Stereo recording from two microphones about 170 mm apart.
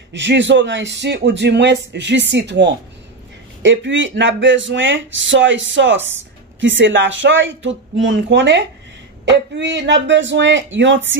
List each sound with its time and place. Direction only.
0.1 s speech: 90° right